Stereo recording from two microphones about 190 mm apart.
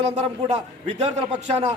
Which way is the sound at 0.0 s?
35° right (ahead or behind).